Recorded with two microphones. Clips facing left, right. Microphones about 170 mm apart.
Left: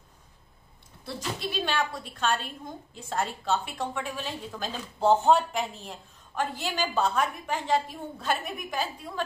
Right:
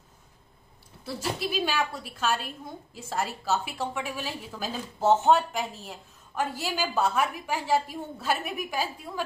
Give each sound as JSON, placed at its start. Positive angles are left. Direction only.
{"t": 1.4, "sound": "a woman's voice", "side_deg": -10}